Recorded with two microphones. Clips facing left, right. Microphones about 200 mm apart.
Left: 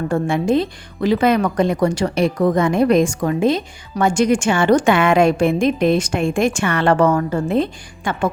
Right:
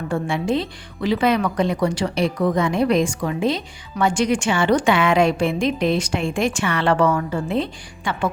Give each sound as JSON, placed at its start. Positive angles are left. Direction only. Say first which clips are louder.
{"t": 0.1, "sound": "speech", "louder": "left 4 dB", "side_deg": 45}